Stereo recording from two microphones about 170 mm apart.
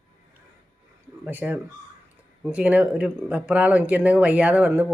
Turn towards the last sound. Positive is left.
turn(degrees=-10)  # may be behind; listen again after turning